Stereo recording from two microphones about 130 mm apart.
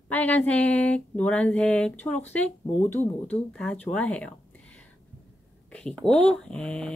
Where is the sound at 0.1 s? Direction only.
10° left (ahead or behind).